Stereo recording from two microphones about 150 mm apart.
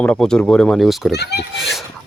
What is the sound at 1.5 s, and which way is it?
Speech, centre (ahead or behind).